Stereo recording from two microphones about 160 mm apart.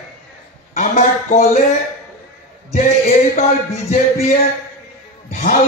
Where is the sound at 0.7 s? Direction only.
55° left (ahead or behind).